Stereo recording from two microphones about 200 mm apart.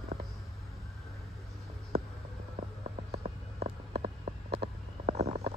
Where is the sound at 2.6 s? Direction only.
35° right (ahead or behind).